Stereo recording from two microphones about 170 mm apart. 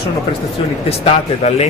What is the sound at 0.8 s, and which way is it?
Speech, 40° left (ahead or behind).